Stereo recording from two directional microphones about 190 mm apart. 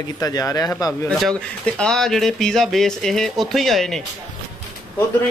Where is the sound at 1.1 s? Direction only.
5° left (ahead or behind).